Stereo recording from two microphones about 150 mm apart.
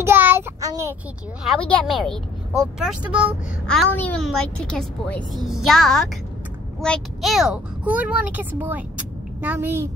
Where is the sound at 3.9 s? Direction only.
10° left (ahead or behind); by 9.9 s 15° right (ahead or behind).